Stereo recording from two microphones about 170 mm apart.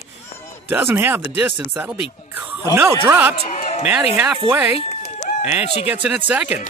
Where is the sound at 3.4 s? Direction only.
45° left (ahead or behind).